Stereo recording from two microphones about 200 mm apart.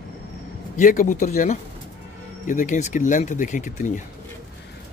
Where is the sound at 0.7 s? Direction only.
40° left (ahead or behind).